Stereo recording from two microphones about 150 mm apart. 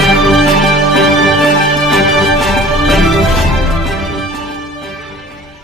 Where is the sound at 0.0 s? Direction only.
Centre (ahead or behind).